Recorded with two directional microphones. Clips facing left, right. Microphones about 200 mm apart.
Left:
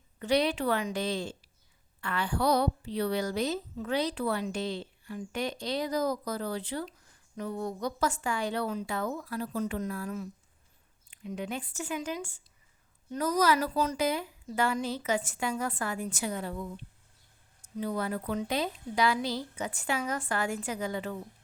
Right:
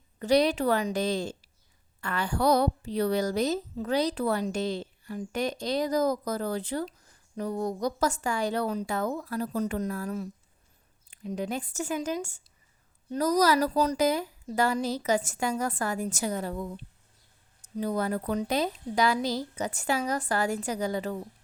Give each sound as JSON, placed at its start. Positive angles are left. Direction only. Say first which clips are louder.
{"t": 0.2, "sound": "a woman's voice", "louder": "right 4 dB", "side_deg": -40}